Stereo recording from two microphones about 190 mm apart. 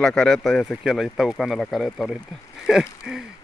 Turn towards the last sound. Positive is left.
turn(degrees=-5)  # may be behind; listen again after turning